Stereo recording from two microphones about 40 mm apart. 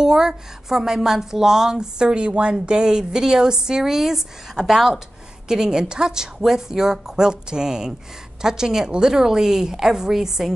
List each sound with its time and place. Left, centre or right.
0.0 s a woman's voice: centre